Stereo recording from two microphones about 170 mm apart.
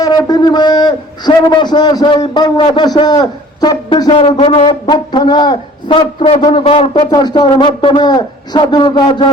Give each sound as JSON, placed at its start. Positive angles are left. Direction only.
{"t": 0.0, "sound": "a man's voice", "side_deg": 25}